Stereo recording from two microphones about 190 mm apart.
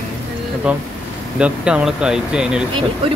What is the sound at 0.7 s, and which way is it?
Speech, 5° right (ahead or behind).